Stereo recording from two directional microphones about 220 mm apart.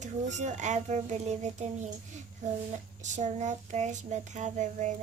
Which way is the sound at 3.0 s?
35° right (ahead or behind).